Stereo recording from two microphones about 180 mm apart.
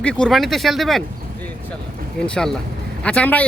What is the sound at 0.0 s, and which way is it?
A man's voice, 5° left (ahead or behind).